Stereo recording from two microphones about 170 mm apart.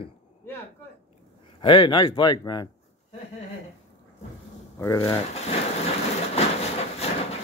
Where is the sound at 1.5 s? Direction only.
30° left (ahead or behind).